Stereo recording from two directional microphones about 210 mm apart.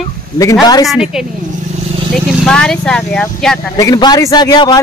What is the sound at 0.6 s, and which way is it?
Speech, 20° left (ahead or behind).